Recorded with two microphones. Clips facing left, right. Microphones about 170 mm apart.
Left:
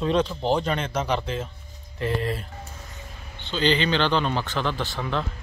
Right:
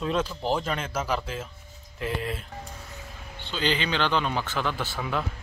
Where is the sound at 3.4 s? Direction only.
5° right (ahead or behind).